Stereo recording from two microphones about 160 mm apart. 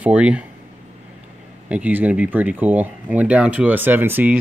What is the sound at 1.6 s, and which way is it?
Speech, 10° right (ahead or behind).